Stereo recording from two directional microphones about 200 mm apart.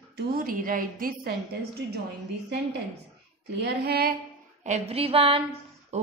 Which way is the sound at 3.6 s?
50° right (ahead or behind).